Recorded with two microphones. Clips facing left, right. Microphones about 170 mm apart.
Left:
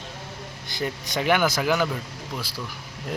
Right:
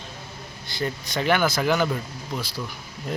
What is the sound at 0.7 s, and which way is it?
Speech, 15° left (ahead or behind).